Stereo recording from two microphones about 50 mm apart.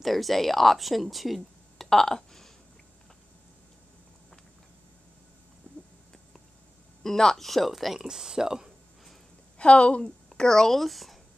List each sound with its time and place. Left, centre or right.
0.0 s speech: centre
7.0 s speech: centre
9.6 s a woman's voice: left
10.0 s speech: centre